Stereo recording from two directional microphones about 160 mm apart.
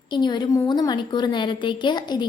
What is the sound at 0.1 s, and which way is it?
A woman's voice, 30° left (ahead or behind).